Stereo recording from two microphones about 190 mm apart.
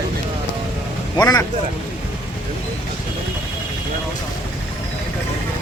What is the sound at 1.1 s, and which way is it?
Speech, 20° left (ahead or behind).